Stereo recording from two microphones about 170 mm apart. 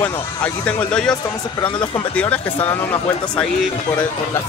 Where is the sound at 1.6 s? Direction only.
30° left (ahead or behind).